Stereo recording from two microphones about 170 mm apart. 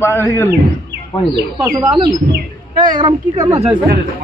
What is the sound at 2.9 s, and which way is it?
Speech, 25° right (ahead or behind).